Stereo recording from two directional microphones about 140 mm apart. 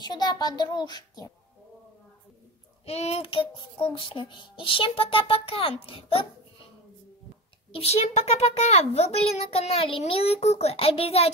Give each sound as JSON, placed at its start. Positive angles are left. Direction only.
{"t": 0.0, "sound": "a child's voice", "side_deg": 30}
{"t": 2.8, "sound": "child singing", "side_deg": 50}
{"t": 7.7, "sound": "a child's voice", "side_deg": 50}